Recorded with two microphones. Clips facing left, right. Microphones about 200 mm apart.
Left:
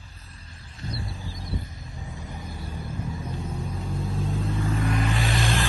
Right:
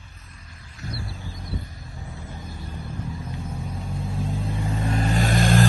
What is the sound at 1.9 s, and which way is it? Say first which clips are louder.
Vehicle: even; 15° left (ahead or behind).